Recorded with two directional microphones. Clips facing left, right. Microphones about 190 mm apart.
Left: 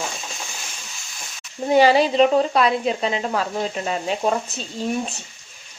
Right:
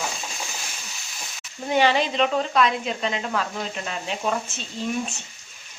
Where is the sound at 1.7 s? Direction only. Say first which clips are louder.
Left 6 dB; 40° left (ahead or behind).